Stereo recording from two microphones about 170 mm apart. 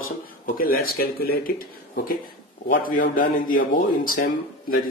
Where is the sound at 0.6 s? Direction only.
60° left (ahead or behind).